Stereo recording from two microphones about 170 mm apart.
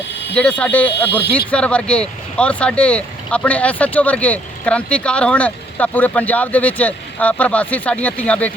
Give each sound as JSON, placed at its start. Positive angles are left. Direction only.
{"t": 0.3, "sound": "speech", "side_deg": 5}